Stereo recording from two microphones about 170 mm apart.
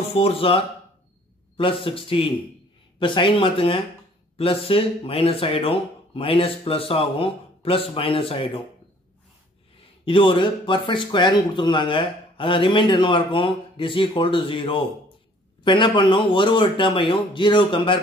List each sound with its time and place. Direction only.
0.1 s speech: 35° left (ahead or behind)
1.6 s speech: 30° left (ahead or behind)
10.0 s speech: 30° left (ahead or behind)